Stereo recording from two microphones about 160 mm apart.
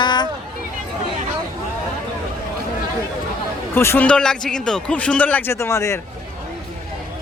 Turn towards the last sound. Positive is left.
turn(degrees=20)  # may be behind; listen again after turning